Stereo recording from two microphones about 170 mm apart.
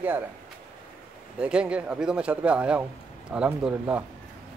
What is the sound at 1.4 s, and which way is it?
A man's voice, 5° right (ahead or behind).